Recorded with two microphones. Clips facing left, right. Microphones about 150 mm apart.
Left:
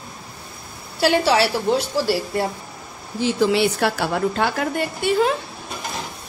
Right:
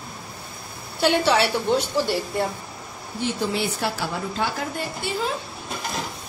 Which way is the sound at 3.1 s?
90° left.